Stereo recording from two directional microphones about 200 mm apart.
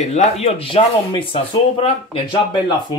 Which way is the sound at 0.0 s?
35° left (ahead or behind).